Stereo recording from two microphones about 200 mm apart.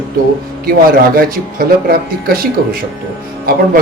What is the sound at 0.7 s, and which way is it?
Speech, 45° right (ahead or behind).